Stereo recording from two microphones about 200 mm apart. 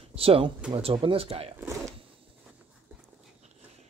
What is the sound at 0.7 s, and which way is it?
Speech, 25° right (ahead or behind).